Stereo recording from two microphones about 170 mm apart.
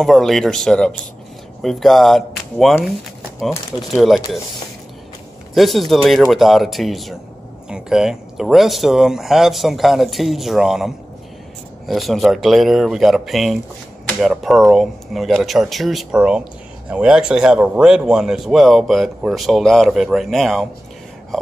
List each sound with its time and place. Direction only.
0.0 s speech: centre (ahead or behind)
5.5 s speech: centre (ahead or behind)
11.9 s speech: centre (ahead or behind)